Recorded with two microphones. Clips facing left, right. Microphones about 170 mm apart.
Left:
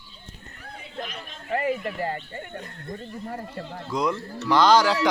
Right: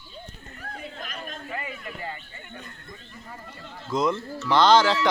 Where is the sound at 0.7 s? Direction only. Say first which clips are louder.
Left 3 dB; 50° right (ahead or behind).